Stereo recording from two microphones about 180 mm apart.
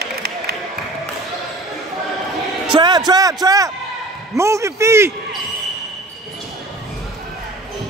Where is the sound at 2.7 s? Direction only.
25° right (ahead or behind).